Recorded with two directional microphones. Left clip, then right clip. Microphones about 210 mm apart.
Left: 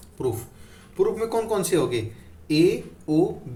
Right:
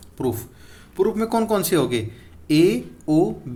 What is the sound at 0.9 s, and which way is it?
Speech, 55° right (ahead or behind).